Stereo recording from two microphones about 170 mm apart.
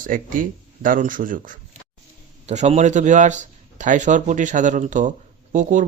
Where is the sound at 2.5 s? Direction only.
40° right (ahead or behind).